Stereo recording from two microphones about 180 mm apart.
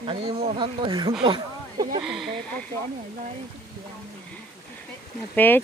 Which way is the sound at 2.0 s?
Centre (ahead or behind).